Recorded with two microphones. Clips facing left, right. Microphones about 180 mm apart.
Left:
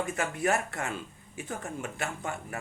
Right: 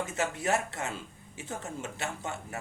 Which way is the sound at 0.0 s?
20° right (ahead or behind).